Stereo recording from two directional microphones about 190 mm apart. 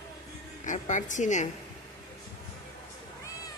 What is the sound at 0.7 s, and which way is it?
Speech, 40° left (ahead or behind).